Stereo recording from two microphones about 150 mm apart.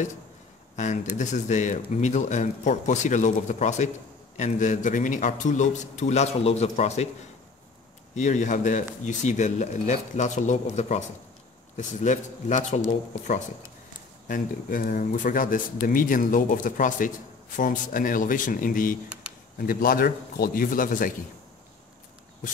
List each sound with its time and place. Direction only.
0.7 s speech: 50° left (ahead or behind)
8.1 s speech: 55° left (ahead or behind)
14.2 s speech: 65° left (ahead or behind)
19.6 s a man's voice: 75° left (ahead or behind)